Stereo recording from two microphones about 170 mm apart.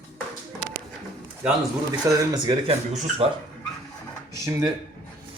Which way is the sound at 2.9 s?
45° right (ahead or behind).